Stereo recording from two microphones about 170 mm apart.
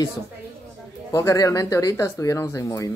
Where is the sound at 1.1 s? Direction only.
20° left (ahead or behind).